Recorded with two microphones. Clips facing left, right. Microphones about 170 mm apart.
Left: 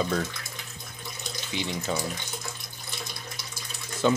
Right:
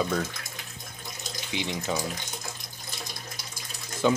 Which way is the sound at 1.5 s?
15° right (ahead or behind).